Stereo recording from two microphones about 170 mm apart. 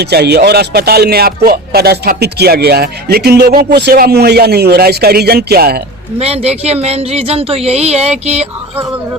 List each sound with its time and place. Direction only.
0.0 s speech: 75° right (ahead or behind)
6.1 s speech: 35° right (ahead or behind)